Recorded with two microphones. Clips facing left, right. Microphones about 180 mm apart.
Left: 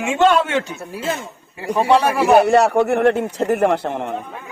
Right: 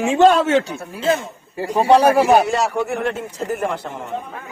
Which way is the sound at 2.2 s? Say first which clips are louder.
Left 3 dB; 60° left (ahead or behind).